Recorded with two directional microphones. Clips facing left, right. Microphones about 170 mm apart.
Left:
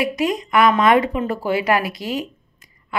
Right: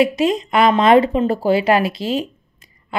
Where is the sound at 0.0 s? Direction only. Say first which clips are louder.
Right 5 dB; 25° right (ahead or behind).